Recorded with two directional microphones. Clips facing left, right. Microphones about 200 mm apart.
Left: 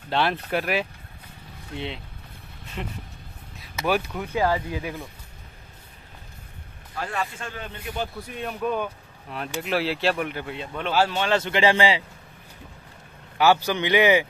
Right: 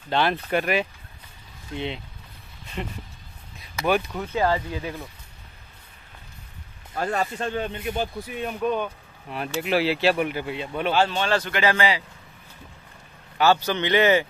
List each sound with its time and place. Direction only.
0.1 s speech: centre (ahead or behind)
6.9 s a man's voice: 45° right (ahead or behind)
7.5 s speech: 25° right (ahead or behind)
8.4 s speech: 5° right (ahead or behind)
8.6 s speech: 5° left (ahead or behind)
10.9 s speech: 10° left (ahead or behind)
11.3 s speech: 25° left (ahead or behind)
13.4 s speech: 15° left (ahead or behind)